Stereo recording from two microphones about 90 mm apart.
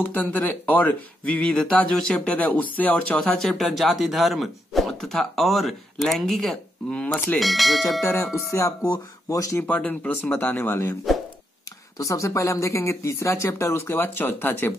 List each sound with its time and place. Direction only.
0.0 s speech: 20° left (ahead or behind)
7.3 s speech: centre (ahead or behind)
8.0 s speech: 25° left (ahead or behind)
8.8 s speech: 40° left (ahead or behind)
9.8 s speech: 20° left (ahead or behind)
12.0 s speech: 35° left (ahead or behind)